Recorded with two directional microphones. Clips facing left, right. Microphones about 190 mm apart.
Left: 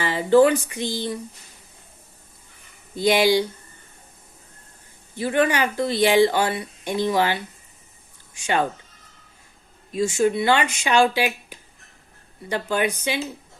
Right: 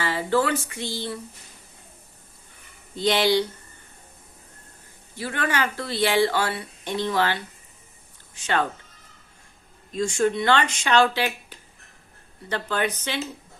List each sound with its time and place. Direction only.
0.0 s speech: 15° left (ahead or behind)
2.9 s speech: 10° left (ahead or behind)
5.1 s speech: 15° left (ahead or behind)
9.9 s speech: 5° left (ahead or behind)